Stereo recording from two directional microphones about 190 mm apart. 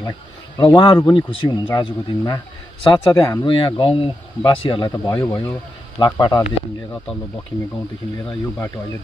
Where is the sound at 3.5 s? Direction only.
25° left (ahead or behind).